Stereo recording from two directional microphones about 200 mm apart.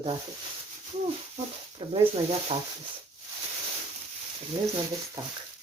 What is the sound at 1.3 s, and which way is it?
Speech, 30° right (ahead or behind).